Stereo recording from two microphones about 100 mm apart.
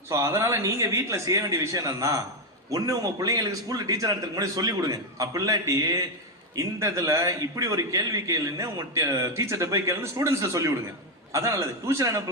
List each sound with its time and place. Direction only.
0.1 s a man's voice: 30° right (ahead or behind)